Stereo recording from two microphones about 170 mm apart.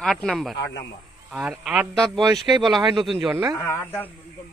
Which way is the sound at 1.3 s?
5° right (ahead or behind).